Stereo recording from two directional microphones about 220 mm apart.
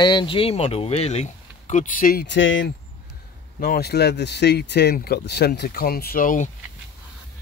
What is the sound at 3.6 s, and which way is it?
Speech, 45° left (ahead or behind).